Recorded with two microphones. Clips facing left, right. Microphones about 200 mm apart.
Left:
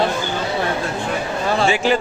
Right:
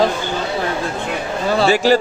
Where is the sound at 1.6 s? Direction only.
40° right (ahead or behind).